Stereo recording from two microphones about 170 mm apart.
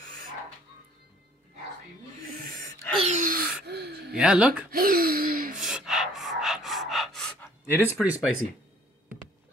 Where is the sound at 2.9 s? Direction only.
40° right (ahead or behind).